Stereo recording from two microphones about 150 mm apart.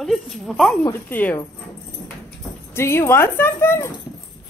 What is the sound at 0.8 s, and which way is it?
Speech, 15° left (ahead or behind).